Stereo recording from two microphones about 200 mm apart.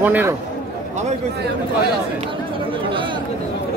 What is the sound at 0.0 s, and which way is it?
Speech, 10° right (ahead or behind).